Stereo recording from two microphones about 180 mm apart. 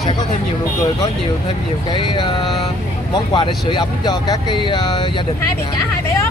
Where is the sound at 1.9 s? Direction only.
25° left (ahead or behind).